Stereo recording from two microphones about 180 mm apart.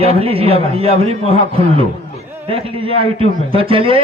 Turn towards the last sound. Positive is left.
turn(degrees=-30)  # may be behind; listen again after turning